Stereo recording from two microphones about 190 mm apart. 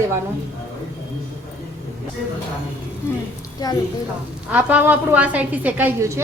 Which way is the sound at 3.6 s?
20° left (ahead or behind).